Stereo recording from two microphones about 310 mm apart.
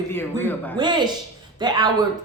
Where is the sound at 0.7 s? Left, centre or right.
Centre.